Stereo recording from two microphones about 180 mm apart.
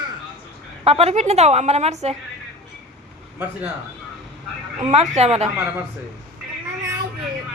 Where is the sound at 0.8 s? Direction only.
35° right (ahead or behind).